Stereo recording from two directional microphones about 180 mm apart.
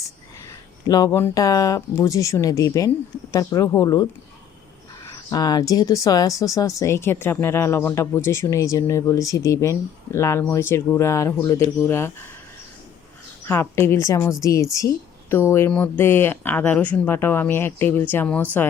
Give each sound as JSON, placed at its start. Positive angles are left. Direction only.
{"t": 0.9, "sound": "speech", "side_deg": 20}
{"t": 5.0, "sound": "speech", "side_deg": 20}
{"t": 13.5, "sound": "speech", "side_deg": 15}